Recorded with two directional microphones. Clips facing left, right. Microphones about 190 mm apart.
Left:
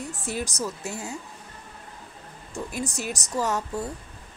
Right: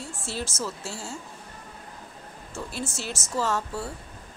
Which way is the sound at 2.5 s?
15° left (ahead or behind).